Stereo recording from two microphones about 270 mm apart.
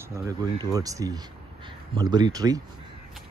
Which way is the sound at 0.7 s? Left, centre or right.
Centre.